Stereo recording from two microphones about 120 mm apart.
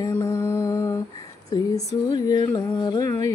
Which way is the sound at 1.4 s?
30° left (ahead or behind).